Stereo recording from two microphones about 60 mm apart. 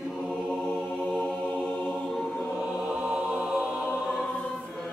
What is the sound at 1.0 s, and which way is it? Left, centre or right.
Music, left.